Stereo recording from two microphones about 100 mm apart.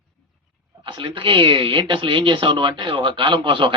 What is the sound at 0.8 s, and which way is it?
Speech, 60° right (ahead or behind).